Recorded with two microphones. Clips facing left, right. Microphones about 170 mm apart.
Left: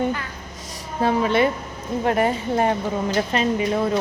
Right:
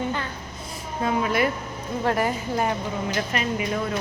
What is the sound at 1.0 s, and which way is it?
Speech, 25° left (ahead or behind).